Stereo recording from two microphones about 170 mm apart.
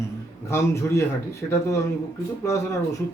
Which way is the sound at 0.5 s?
15° left (ahead or behind).